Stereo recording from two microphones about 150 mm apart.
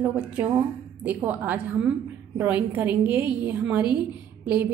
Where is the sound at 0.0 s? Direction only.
15° right (ahead or behind).